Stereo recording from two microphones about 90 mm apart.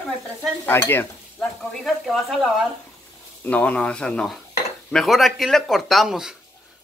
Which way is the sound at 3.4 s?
15° left (ahead or behind).